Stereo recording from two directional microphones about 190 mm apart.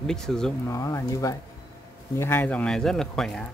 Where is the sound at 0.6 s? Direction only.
15° left (ahead or behind).